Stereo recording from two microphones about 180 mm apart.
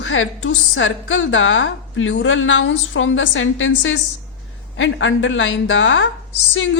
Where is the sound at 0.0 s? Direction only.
90° left.